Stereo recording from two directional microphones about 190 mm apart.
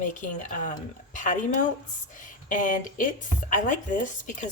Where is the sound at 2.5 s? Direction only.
45° left (ahead or behind).